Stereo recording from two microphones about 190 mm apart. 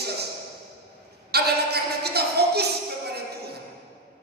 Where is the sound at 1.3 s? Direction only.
55° right (ahead or behind).